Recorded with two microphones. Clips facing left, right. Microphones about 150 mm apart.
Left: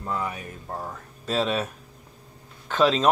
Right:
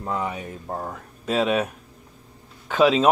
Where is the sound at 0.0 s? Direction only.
20° right (ahead or behind).